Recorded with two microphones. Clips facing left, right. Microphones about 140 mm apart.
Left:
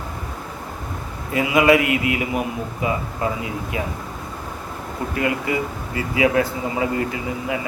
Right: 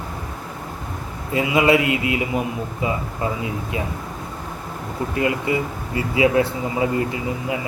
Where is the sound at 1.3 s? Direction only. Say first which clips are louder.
Left 1 dB; 25° right (ahead or behind).